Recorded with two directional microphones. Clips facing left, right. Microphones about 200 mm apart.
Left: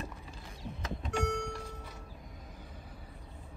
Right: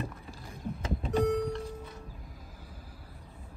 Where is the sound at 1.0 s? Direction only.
35° right (ahead or behind).